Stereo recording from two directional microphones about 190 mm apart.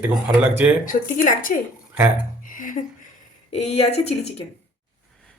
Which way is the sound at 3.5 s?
35° left (ahead or behind).